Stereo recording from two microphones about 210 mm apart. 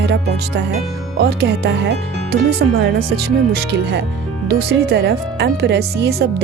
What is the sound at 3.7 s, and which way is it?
Speech, 55° right (ahead or behind).